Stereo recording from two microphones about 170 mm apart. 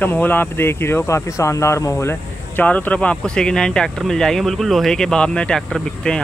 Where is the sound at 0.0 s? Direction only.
10° left (ahead or behind).